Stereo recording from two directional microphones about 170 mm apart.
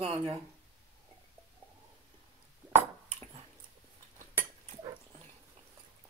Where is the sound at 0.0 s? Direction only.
30° right (ahead or behind).